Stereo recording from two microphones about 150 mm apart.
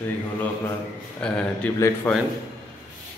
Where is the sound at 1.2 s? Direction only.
5° left (ahead or behind).